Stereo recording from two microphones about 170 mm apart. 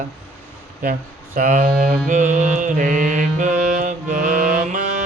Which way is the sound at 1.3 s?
50° right (ahead or behind).